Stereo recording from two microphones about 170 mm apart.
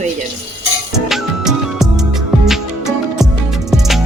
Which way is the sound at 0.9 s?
Centre (ahead or behind).